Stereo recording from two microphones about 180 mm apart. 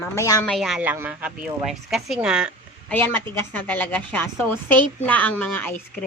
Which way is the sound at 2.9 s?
10° left (ahead or behind).